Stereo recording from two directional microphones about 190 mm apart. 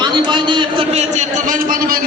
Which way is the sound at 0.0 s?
25° right (ahead or behind).